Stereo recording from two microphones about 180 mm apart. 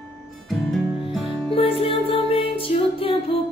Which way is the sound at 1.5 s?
30° left (ahead or behind).